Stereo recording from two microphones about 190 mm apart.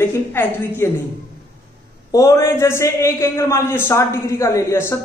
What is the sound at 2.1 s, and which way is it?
A man's voice, 15° left (ahead or behind).